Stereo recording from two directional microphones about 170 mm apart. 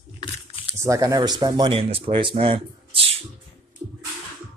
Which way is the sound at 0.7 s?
20° right (ahead or behind).